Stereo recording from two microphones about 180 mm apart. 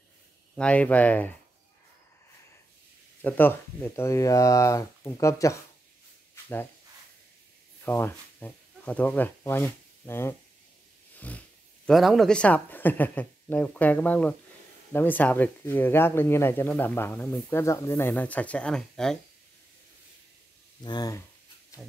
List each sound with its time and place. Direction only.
0.6 s speech: 5° left (ahead or behind)
3.2 s speech: 10° left (ahead or behind)
6.3 s a sound: 15° left (ahead or behind)
7.8 s speech: 10° left (ahead or behind)
20.8 s speech: 25° left (ahead or behind)